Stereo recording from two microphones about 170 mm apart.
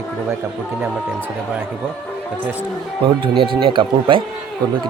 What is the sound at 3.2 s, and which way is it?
Speech, 30° right (ahead or behind).